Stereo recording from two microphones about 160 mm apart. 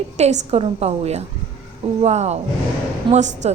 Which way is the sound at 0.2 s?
45° right (ahead or behind).